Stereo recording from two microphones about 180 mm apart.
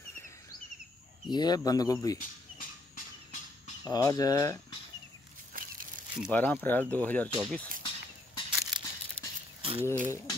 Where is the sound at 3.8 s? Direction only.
20° left (ahead or behind).